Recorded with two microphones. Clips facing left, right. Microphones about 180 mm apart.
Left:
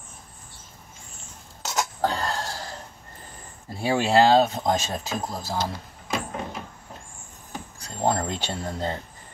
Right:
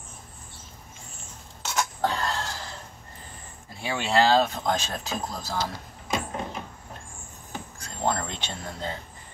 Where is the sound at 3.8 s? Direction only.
35° left (ahead or behind).